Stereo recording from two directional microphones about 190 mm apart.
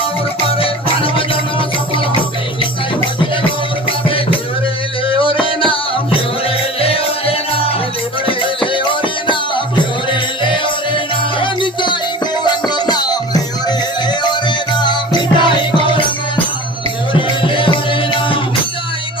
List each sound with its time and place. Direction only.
0.4 s music: 30° left (ahead or behind)
5.0 s music: 30° left (ahead or behind)
17.1 s music: 25° left (ahead or behind)